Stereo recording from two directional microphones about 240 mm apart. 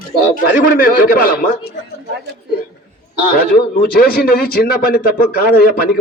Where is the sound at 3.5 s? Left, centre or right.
Left.